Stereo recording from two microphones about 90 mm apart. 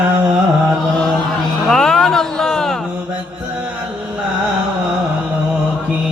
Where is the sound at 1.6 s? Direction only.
5° left (ahead or behind).